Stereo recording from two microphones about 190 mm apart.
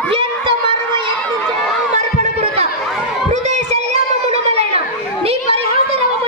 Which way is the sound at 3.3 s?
35° right (ahead or behind).